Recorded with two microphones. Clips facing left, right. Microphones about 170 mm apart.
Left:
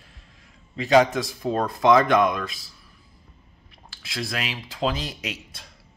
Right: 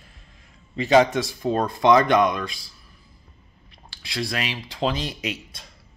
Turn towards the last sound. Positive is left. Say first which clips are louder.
# right 4 dB
turn(degrees=0)  # may be behind; listen again after turning